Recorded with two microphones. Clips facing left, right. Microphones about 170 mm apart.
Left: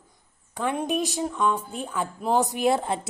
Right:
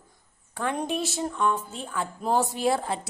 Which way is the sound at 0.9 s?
15° left (ahead or behind).